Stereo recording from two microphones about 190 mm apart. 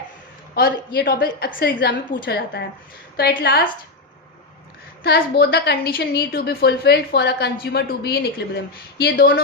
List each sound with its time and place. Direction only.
0.5 s a woman's voice: 55° left (ahead or behind)
3.2 s a woman's voice: 55° left (ahead or behind)
5.0 s a woman's voice: 55° left (ahead or behind)